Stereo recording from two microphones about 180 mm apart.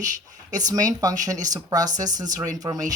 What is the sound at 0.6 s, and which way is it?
Speech, 20° right (ahead or behind).